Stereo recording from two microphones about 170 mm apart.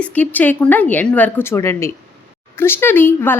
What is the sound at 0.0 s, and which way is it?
A woman's voice, 10° left (ahead or behind).